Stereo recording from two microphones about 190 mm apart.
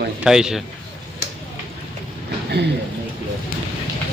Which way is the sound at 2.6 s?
60° right (ahead or behind).